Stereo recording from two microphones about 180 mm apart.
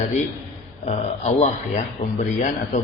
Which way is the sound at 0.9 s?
40° left (ahead or behind).